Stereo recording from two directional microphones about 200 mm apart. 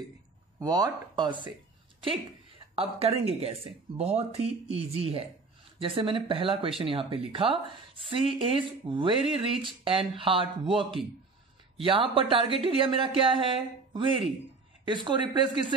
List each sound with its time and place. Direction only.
0.6 s speech: 20° right (ahead or behind)
2.7 s speech: 30° right (ahead or behind)